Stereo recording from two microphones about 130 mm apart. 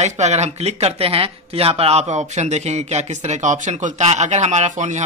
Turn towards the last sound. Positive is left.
turn(degrees=-65)  # may be behind; listen again after turning